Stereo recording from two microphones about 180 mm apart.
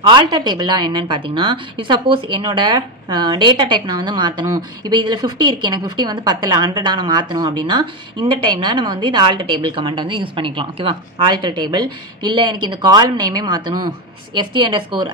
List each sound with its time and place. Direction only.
0.1 s a woman's voice: 25° right (ahead or behind)